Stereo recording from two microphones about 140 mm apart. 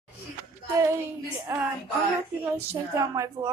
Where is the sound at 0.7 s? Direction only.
20° right (ahead or behind).